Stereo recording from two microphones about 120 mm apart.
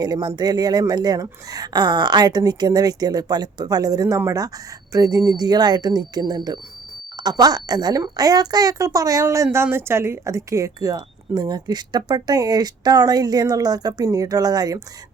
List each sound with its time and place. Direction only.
0.0 s speech: 35° right (ahead or behind)